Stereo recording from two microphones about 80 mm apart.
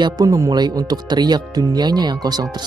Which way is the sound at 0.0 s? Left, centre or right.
Right.